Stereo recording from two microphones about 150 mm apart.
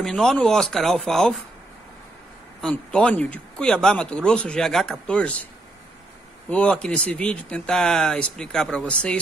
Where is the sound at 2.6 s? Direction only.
5° left (ahead or behind).